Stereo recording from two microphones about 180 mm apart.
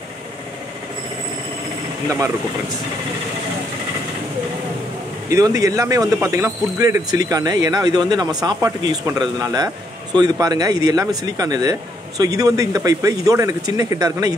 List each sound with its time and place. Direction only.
2.0 s speech: 15° right (ahead or behind)
5.3 s speech: 20° right (ahead or behind)